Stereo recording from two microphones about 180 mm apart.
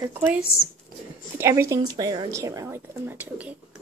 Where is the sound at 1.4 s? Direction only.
15° right (ahead or behind).